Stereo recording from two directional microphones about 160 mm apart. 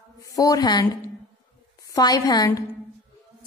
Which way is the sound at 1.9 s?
25° left (ahead or behind).